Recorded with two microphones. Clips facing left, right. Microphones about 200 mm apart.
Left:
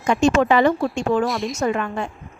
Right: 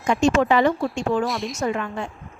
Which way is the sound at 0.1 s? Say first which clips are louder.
Left 2 dB; 65° left (ahead or behind).